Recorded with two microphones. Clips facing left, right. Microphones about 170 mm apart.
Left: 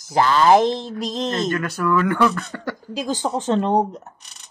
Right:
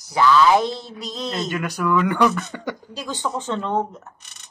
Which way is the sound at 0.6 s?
90° left.